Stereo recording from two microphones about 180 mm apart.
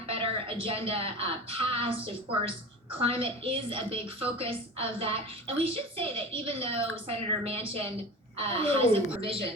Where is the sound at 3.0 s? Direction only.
30° right (ahead or behind).